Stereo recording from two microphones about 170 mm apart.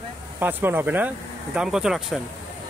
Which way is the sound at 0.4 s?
10° right (ahead or behind).